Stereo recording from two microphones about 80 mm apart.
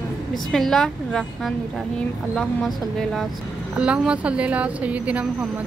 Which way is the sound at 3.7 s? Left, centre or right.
Centre.